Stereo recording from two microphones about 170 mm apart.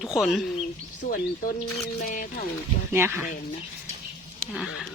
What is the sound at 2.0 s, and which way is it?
Speech, 50° left (ahead or behind).